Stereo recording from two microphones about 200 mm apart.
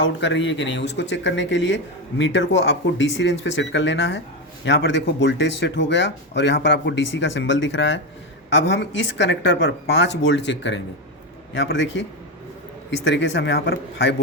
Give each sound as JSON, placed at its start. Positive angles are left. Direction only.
{"t": 0.0, "sound": "speech", "side_deg": 65}
{"t": 13.1, "sound": "speech", "side_deg": 65}